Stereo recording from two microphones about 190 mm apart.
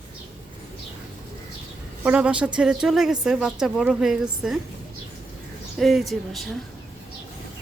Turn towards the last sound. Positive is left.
turn(degrees=0)  # may be behind; listen again after turning